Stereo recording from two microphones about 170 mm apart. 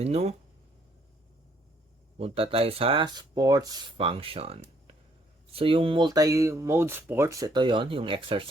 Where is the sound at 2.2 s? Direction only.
35° right (ahead or behind).